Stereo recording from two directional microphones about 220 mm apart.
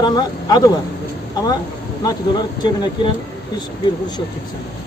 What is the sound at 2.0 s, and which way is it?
Speech, 20° left (ahead or behind).